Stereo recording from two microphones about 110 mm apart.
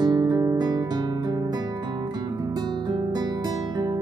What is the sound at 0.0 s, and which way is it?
Guitar, 40° right (ahead or behind).